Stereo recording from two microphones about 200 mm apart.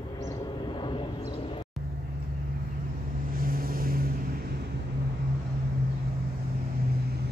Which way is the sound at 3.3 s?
45° right (ahead or behind).